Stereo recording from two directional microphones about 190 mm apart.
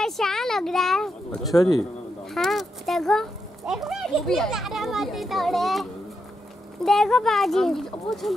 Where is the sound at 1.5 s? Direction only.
20° left (ahead or behind).